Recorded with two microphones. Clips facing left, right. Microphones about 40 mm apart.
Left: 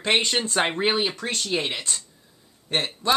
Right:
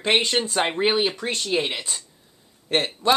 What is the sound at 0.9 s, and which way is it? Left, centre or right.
Speech, centre.